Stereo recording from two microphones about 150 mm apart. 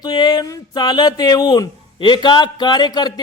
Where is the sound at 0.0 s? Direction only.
25° left (ahead or behind).